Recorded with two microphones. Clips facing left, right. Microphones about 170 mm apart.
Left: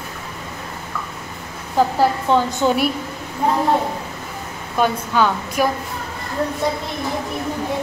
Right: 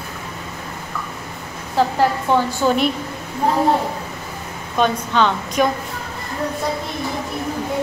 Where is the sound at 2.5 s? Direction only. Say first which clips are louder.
Even; 20° left (ahead or behind).